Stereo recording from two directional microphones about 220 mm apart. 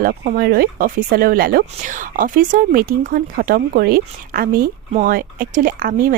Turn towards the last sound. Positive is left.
turn(degrees=-40)  # may be behind; listen again after turning